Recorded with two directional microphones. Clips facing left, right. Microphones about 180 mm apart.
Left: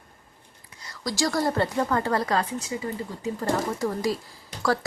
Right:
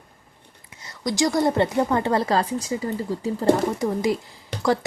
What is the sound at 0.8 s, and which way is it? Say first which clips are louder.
A woman's voice: right 4 dB; 20° right (ahead or behind).